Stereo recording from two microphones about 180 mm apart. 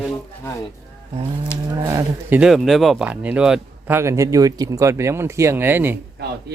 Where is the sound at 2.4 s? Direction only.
Centre (ahead or behind).